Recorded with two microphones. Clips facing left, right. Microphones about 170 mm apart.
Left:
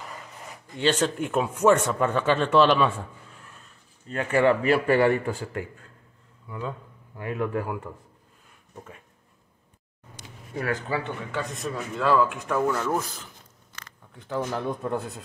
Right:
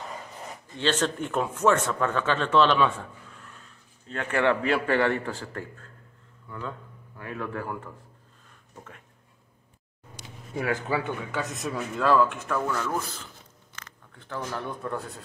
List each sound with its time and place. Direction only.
0.7 s speech: 10° left (ahead or behind)
4.1 s speech: 5° left (ahead or behind)
10.6 s a man's voice: 15° right (ahead or behind)
11.3 s speech: centre (ahead or behind)
12.4 s speech: 15° left (ahead or behind)
14.1 s speech: 15° left (ahead or behind)